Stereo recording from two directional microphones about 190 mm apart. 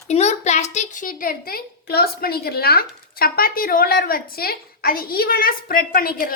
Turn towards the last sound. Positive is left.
turn(degrees=50)  # may be behind; listen again after turning